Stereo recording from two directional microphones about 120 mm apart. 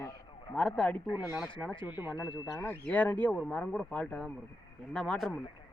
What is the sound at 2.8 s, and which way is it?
Speech, 15° left (ahead or behind).